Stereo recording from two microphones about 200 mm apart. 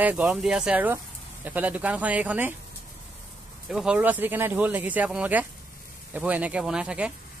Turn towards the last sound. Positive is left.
turn(degrees=-5)  # may be behind; listen again after turning